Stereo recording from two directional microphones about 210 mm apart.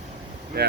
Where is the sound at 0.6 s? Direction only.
50° right (ahead or behind).